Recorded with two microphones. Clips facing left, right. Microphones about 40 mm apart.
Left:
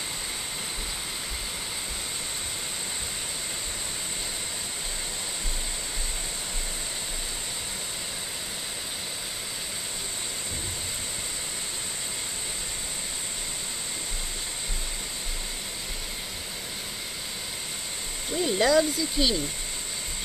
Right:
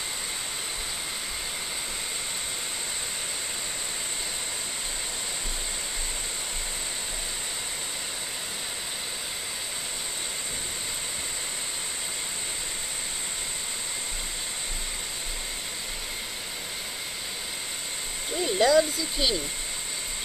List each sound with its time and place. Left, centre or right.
18.3 s speech: centre